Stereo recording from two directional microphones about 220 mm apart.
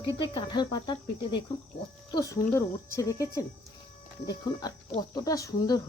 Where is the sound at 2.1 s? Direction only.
15° left (ahead or behind).